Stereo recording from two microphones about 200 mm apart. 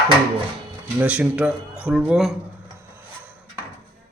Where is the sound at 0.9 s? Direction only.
5° right (ahead or behind).